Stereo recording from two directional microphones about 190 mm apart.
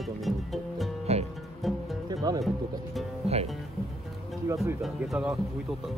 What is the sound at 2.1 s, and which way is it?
Music, 20° right (ahead or behind).